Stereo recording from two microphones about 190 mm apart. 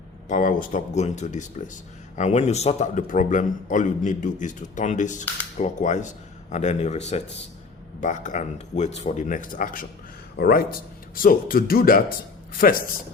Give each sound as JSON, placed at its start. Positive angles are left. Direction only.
{"t": 0.3, "sound": "a man's voice", "side_deg": 40}